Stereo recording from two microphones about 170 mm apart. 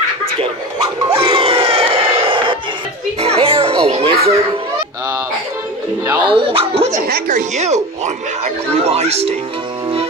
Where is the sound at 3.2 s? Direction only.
35° right (ahead or behind).